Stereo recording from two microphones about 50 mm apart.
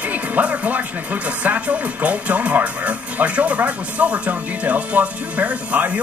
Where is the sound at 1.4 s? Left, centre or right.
Right.